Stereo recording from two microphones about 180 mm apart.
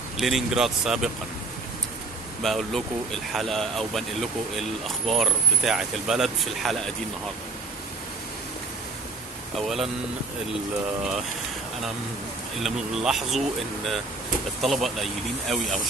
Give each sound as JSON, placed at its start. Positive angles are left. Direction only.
{"t": 0.2, "sound": "speech", "side_deg": 0}
{"t": 2.4, "sound": "speech", "side_deg": 0}
{"t": 9.6, "sound": "speech", "side_deg": 0}
{"t": 12.5, "sound": "speech", "side_deg": 0}
{"t": 14.6, "sound": "speech", "side_deg": 0}